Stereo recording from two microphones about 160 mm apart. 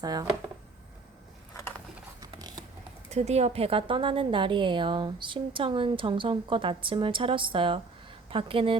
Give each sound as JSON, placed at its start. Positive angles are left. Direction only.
{"t": 0.0, "sound": "speech", "side_deg": -25}
{"t": 2.2, "sound": "a sound", "side_deg": -25}
{"t": 3.1, "sound": "a woman's voice", "side_deg": -45}